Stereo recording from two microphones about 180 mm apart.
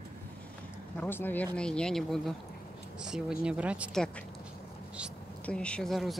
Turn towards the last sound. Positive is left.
turn(degrees=0)  # may be behind; listen again after turning